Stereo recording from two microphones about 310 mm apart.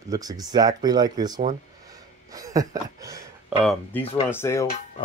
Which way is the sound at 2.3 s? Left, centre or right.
Centre.